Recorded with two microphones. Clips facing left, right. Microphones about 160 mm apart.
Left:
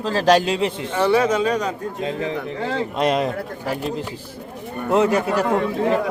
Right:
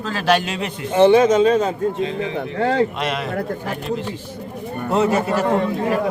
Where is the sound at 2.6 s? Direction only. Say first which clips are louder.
Right 8 dB; 70° right (ahead or behind).